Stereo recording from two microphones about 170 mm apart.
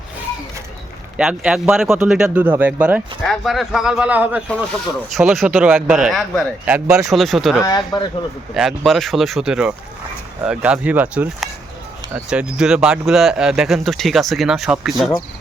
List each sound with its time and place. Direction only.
1.1 s speech: 5° right (ahead or behind)
4.4 s speech: centre (ahead or behind)
5.9 s speech: centre (ahead or behind)
7.6 s speech: 20° left (ahead or behind)
8.5 s speech: centre (ahead or behind)